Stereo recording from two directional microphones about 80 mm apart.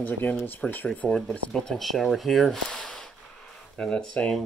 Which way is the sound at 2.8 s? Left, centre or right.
Centre.